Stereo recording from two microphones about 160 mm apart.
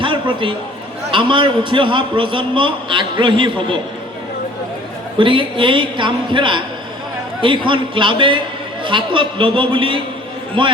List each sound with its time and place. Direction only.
0.0 s a sound: 30° right (ahead or behind)
1.1 s a man's voice: 30° right (ahead or behind)
5.1 s a man's voice: 30° right (ahead or behind)